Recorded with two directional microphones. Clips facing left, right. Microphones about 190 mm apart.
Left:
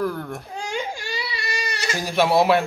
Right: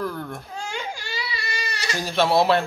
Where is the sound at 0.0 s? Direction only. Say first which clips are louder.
Left 3 dB; 10° left (ahead or behind).